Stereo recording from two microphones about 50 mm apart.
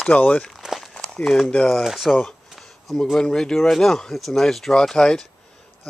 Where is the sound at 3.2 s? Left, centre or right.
Centre.